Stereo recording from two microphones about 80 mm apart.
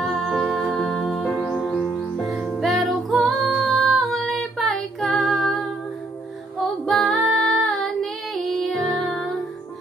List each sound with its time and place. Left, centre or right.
0.0 s music: centre
6.9 s female singing: centre